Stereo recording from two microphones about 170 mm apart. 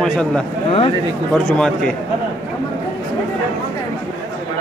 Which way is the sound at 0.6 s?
35° left (ahead or behind).